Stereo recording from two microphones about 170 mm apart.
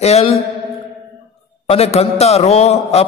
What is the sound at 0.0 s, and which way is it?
Speech, 40° left (ahead or behind).